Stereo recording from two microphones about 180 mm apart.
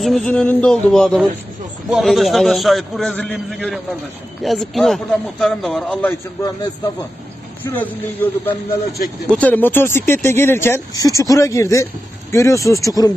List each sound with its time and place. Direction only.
0.0 s a man's voice: 5° left (ahead or behind)
7.6 s speech: 10° left (ahead or behind)